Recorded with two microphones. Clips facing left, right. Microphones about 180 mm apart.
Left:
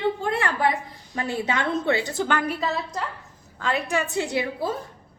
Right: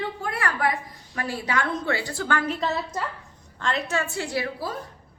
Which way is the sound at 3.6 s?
10° left (ahead or behind).